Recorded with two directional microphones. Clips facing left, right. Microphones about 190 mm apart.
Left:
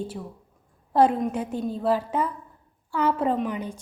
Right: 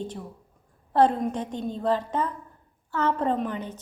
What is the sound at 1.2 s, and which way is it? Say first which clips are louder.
A woman's voice: left 2 dB; 10° left (ahead or behind).